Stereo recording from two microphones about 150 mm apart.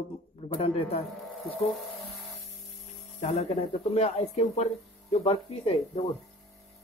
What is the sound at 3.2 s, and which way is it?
Speech, 45° left (ahead or behind).